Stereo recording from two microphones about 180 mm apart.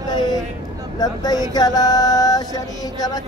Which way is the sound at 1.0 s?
20° left (ahead or behind).